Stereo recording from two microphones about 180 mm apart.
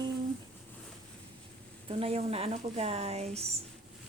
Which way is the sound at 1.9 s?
35° right (ahead or behind).